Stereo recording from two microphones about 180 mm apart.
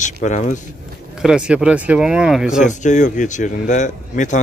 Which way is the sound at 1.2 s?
5° right (ahead or behind).